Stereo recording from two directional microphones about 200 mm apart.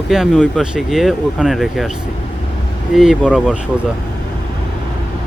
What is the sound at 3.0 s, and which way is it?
Speech, 5° right (ahead or behind).